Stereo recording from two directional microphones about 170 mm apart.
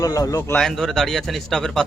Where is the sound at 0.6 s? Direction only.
Centre (ahead or behind).